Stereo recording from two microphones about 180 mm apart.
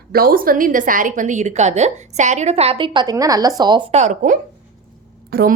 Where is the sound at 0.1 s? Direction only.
55° right (ahead or behind); by 3.8 s 25° right (ahead or behind).